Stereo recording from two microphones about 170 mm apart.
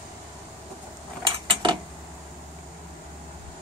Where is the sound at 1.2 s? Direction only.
30° right (ahead or behind).